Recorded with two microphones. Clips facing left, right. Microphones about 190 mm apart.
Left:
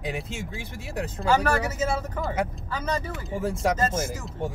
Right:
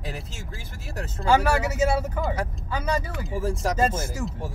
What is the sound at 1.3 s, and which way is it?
Speech, 10° right (ahead or behind).